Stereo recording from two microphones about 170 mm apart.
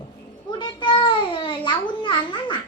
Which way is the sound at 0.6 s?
30° left (ahead or behind).